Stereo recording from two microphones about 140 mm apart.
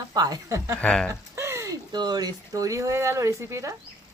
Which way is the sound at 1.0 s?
20° right (ahead or behind).